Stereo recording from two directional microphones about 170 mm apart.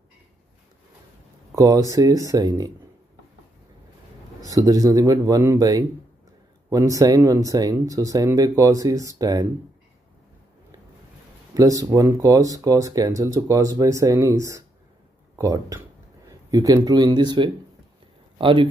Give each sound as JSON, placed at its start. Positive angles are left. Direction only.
{"t": 1.5, "sound": "speech", "side_deg": -20}
{"t": 4.4, "sound": "speech", "side_deg": -20}
{"t": 11.5, "sound": "speech", "side_deg": -20}